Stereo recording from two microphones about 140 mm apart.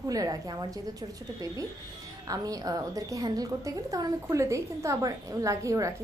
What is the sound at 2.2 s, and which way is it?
A woman's voice, 25° right (ahead or behind).